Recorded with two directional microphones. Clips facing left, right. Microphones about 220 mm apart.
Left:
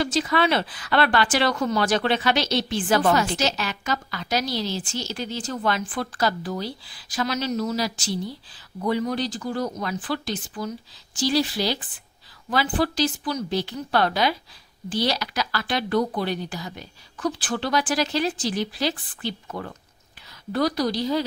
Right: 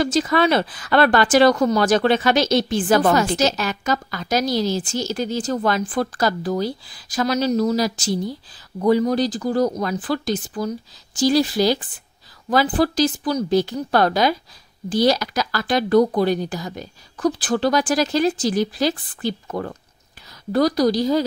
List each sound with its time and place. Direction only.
0.0 s speech: 45° right (ahead or behind)